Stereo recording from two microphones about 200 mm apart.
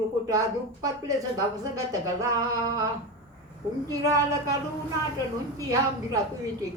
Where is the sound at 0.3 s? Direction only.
15° right (ahead or behind).